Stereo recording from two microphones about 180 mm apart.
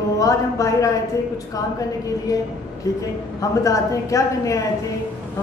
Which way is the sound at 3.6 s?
20° left (ahead or behind).